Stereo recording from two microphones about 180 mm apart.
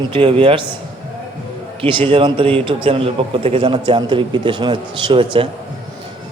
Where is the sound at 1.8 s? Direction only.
30° right (ahead or behind).